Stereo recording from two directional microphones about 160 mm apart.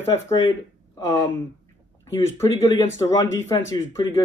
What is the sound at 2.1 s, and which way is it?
Speech, 15° left (ahead or behind).